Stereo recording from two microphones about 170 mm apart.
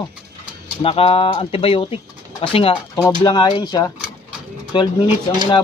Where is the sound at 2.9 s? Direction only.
20° left (ahead or behind).